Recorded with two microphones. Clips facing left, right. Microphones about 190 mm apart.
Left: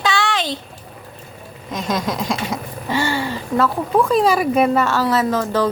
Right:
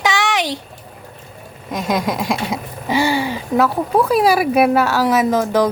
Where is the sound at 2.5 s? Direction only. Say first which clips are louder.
Right 2 dB; 15° right (ahead or behind).